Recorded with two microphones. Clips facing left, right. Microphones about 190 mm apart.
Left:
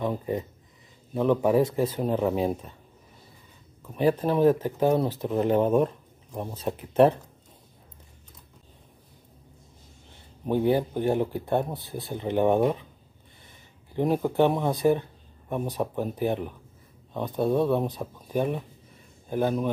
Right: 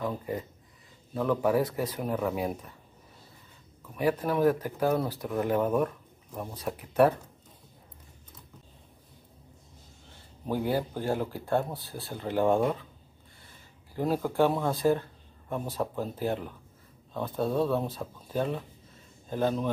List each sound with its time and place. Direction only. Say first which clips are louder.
0.0 s speech: left 4 dB; 25° left (ahead or behind)
3.9 s speech: left 4 dB; 30° left (ahead or behind)
10.4 s speech: left 5 dB; 20° left (ahead or behind)